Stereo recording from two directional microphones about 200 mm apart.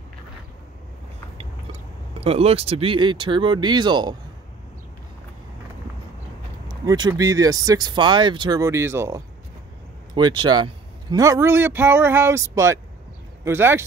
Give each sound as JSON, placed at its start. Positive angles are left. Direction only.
{"t": 2.1, "sound": "speech", "side_deg": -30}
{"t": 6.7, "sound": "a man's voice", "side_deg": -20}